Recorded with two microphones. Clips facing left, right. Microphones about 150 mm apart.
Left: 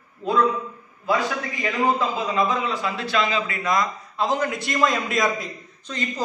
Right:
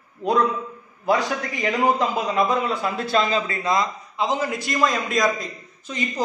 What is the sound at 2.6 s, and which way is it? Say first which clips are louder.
A man's voice: right 2 dB; 50° right (ahead or behind).